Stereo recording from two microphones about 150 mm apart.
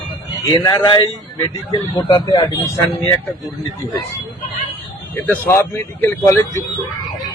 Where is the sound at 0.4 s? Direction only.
25° left (ahead or behind).